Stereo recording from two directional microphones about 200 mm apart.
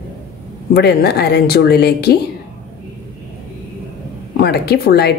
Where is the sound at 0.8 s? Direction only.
55° left (ahead or behind).